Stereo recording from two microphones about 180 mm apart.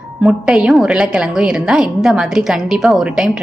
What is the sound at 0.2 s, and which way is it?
A woman's voice, 5° right (ahead or behind).